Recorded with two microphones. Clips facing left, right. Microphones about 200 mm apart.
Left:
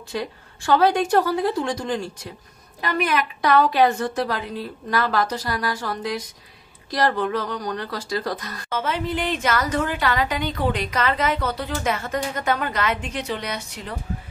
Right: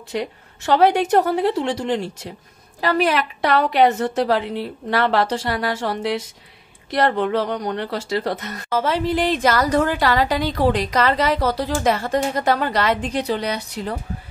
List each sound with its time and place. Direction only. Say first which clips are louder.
0.1 s a woman's voice: right 3 dB; 20° right (ahead or behind)
8.7 s a woman's voice: right 5 dB; 35° right (ahead or behind)